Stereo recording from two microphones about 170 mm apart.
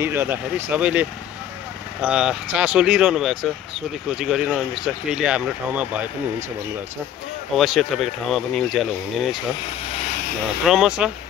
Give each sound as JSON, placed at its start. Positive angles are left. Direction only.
{"t": 0.0, "sound": "speech", "side_deg": -10}
{"t": 7.5, "sound": "speech", "side_deg": 0}
{"t": 9.9, "sound": "vehicle", "side_deg": 50}
{"t": 10.6, "sound": "speech", "side_deg": -5}